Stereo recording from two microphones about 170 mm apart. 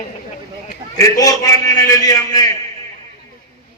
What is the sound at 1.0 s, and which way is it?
A man's voice, 20° left (ahead or behind).